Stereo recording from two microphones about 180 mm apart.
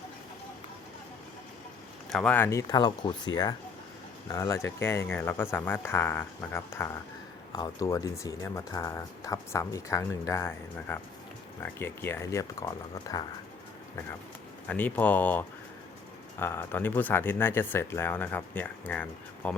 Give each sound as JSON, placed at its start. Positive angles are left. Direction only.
{"t": 2.0, "sound": "speech", "side_deg": 5}
{"t": 14.7, "sound": "speech", "side_deg": 10}